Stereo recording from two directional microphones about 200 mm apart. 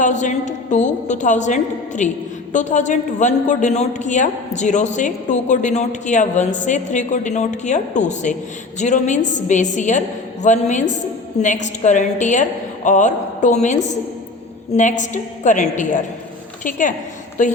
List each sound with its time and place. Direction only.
0.0 s a man's voice: 40° left (ahead or behind)